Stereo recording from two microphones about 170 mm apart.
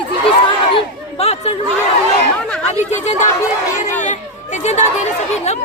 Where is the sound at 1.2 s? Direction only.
40° left (ahead or behind).